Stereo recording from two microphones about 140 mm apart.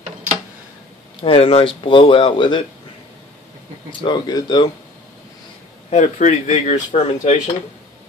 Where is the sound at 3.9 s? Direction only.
35° left (ahead or behind).